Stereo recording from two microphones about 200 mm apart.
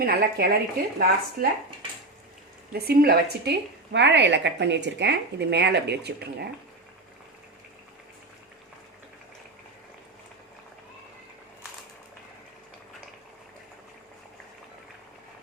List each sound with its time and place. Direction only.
0.0 s speech: 50° right (ahead or behind)
2.7 s speech: 50° right (ahead or behind)